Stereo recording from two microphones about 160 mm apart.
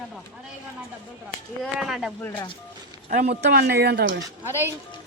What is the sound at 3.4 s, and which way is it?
Speech, 80° right.